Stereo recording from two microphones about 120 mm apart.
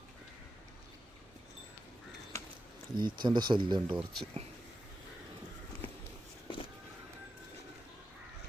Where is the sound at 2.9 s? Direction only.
40° right (ahead or behind).